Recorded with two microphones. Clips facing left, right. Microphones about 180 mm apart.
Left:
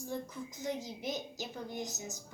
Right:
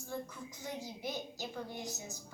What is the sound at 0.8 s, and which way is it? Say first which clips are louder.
A woman's voice: left 2 dB; 20° left (ahead or behind).